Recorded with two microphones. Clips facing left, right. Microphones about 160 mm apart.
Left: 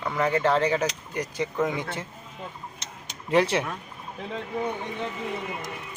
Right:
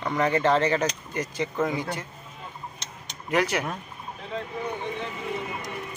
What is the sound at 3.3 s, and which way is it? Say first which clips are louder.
Speech: left 3 dB; 25° left (ahead or behind).